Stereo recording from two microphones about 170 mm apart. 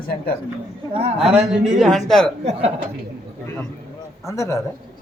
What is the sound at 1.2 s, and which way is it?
Speech, 5° right (ahead or behind).